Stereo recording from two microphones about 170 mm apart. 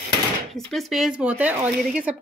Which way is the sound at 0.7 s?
Centre (ahead or behind).